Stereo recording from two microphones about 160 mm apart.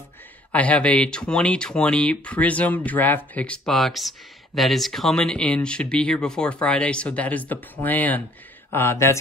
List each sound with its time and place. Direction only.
0.5 s speech: 10° left (ahead or behind)